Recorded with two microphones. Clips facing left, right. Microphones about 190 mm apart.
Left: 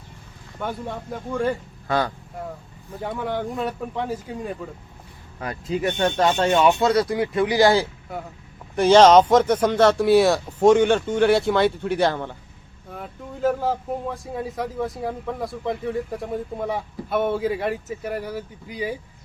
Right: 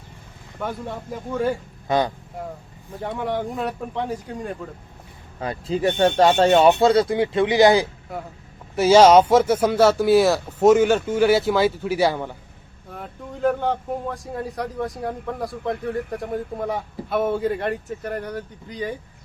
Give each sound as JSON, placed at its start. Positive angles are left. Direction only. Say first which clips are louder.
{"t": 0.6, "sound": "speech", "louder": "even", "side_deg": 0}
{"t": 1.9, "sound": "speech", "louder": "right 2 dB", "side_deg": -20}
{"t": 3.0, "sound": "speech", "louder": "right 1 dB", "side_deg": 0}
{"t": 5.4, "sound": "speech", "louder": "right 2 dB", "side_deg": -30}
{"t": 8.1, "sound": "speech", "louder": "even", "side_deg": 0}
{"t": 12.9, "sound": "speech", "louder": "even", "side_deg": 0}